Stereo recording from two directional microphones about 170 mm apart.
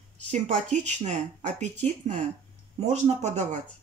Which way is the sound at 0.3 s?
40° right (ahead or behind).